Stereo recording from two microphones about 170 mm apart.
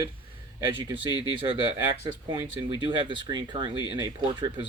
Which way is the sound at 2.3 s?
30° right (ahead or behind).